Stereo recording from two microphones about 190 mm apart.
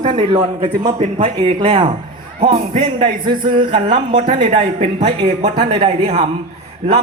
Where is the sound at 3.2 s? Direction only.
25° right (ahead or behind).